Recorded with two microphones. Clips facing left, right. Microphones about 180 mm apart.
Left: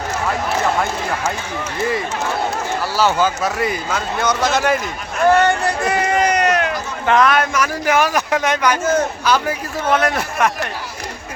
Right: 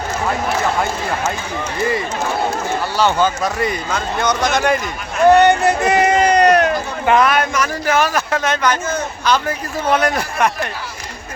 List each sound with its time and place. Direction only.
2.9 s speech: 5° left (ahead or behind)
5.3 s run: 20° right (ahead or behind); by 6.7 s 40° right (ahead or behind)
7.0 s speech: 10° right (ahead or behind)
7.5 s a man's voice: 10° left (ahead or behind)